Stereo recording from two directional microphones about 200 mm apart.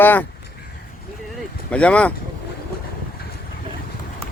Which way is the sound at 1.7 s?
5° left (ahead or behind).